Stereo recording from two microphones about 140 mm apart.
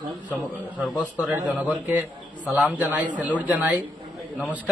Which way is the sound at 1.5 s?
10° right (ahead or behind).